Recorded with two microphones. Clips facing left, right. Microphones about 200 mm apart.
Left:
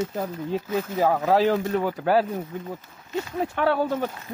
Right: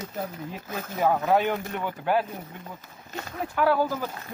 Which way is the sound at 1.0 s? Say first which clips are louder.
Left 2 dB; 35° left (ahead or behind).